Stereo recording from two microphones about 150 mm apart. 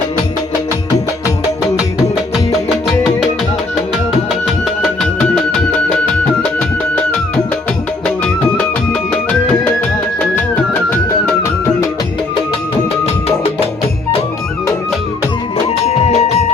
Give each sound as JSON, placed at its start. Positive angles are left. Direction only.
{"t": 2.8, "sound": "music", "side_deg": 0}
{"t": 4.4, "sound": "music", "side_deg": 0}
{"t": 10.2, "sound": "music", "side_deg": 10}
{"t": 13.2, "sound": "music", "side_deg": 40}
{"t": 15.6, "sound": "music", "side_deg": 45}